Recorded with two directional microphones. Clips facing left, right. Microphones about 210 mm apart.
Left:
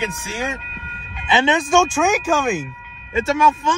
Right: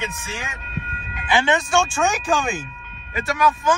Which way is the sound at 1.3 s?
20° left (ahead or behind).